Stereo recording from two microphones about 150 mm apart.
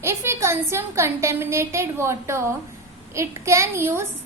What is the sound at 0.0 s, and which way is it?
A woman's voice, 15° right (ahead or behind).